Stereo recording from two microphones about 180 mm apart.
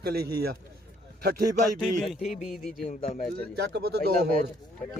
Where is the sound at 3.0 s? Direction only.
35° left (ahead or behind).